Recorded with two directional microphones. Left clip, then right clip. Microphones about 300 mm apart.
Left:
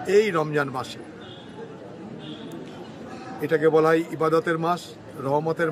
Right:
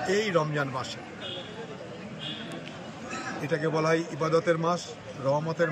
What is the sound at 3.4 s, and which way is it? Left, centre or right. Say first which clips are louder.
Speech: left 8 dB; centre.